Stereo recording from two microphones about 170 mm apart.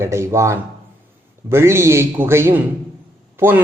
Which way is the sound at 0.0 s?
15° right (ahead or behind).